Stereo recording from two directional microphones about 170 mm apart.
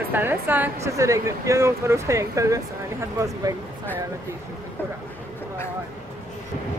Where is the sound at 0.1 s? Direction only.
10° right (ahead or behind).